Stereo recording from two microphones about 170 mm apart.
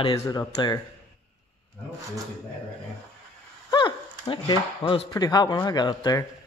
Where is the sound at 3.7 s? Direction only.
25° left (ahead or behind).